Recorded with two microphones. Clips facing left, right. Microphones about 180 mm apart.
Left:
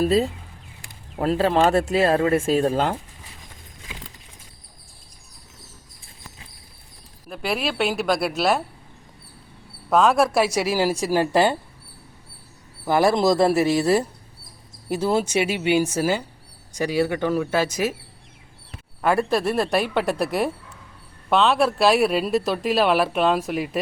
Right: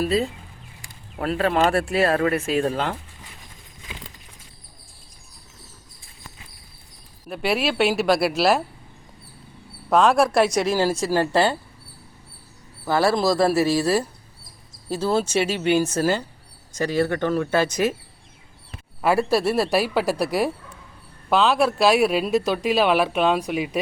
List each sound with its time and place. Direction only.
0.0 s speech: 45° left (ahead or behind)
1.3 s speech: 30° left (ahead or behind)
1.7 s speech: 20° left (ahead or behind)
7.3 s speech: 5° right (ahead or behind)
9.9 s speech: centre (ahead or behind)
12.8 s speech: 15° left (ahead or behind)
19.0 s speech: 5° right (ahead or behind)